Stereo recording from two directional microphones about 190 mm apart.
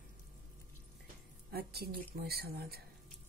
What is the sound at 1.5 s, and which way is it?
Speech, 55° right (ahead or behind).